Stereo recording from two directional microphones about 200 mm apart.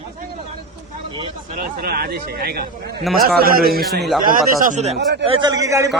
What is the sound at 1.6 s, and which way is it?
A man's voice, 50° right (ahead or behind).